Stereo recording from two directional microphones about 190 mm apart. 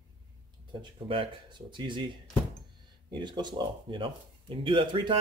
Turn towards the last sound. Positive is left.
turn(degrees=-25)  # may be behind; listen again after turning